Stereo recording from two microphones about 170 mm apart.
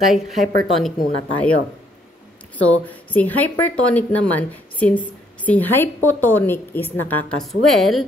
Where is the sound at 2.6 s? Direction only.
10° left (ahead or behind).